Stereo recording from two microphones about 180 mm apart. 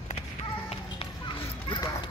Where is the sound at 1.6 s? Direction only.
25° left (ahead or behind).